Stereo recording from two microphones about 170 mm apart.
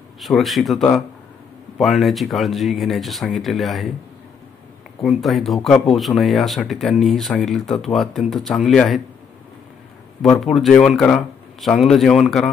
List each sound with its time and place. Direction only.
0.2 s speech: centre (ahead or behind)
5.0 s speech: centre (ahead or behind)
10.2 s speech: centre (ahead or behind)